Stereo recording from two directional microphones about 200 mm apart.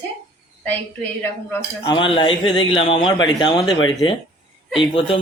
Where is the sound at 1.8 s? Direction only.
25° left (ahead or behind).